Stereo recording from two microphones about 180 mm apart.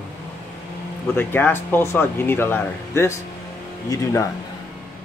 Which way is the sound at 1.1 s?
10° left (ahead or behind).